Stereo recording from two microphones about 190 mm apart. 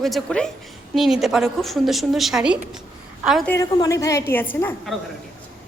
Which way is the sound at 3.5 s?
20° left (ahead or behind).